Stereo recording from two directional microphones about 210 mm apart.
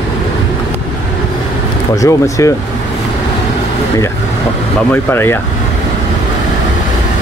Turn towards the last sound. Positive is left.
turn(degrees=10)  # may be behind; listen again after turning